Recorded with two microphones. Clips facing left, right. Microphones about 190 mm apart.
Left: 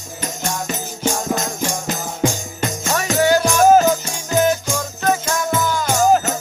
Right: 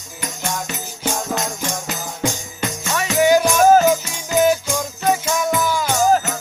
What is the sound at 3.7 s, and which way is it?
Music, centre (ahead or behind).